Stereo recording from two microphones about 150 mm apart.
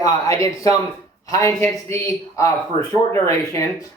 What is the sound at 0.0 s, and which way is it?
Speech, 20° left (ahead or behind).